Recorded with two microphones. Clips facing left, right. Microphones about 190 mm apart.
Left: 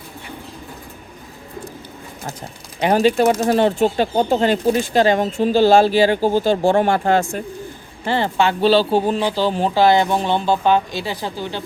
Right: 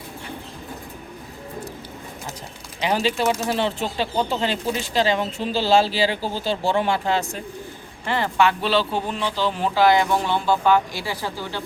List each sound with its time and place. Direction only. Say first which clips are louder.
2.8 s speech: left 7 dB; 50° left (ahead or behind)
8.0 s speech: left 2 dB; 30° left (ahead or behind)